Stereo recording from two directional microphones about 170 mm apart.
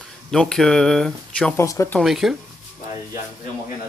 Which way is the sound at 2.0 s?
Centre (ahead or behind).